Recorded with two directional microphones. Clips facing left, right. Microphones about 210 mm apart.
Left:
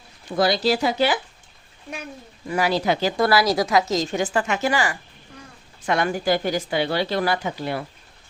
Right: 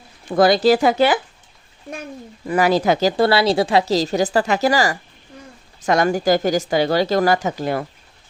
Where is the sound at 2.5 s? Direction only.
50° right (ahead or behind).